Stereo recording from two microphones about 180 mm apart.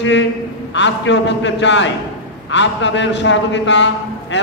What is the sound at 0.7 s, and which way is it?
A man's voice, 80° left.